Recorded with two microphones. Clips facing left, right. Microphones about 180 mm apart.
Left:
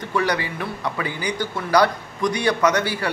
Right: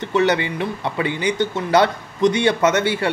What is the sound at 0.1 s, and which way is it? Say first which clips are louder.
A man's voice: right 5 dB; 25° right (ahead or behind).